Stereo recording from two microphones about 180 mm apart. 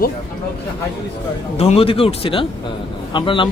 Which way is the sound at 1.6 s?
35° left (ahead or behind).